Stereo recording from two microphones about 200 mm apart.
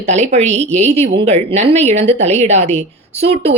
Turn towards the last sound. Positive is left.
turn(degrees=-30)  # may be behind; listen again after turning